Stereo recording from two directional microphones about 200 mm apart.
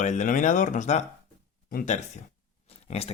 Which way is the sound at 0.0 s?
40° left (ahead or behind).